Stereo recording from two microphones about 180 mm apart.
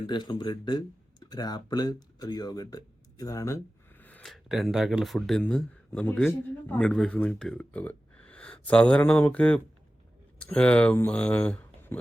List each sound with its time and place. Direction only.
0.1 s speech: 25° left (ahead or behind); by 11.9 s 10° left (ahead or behind)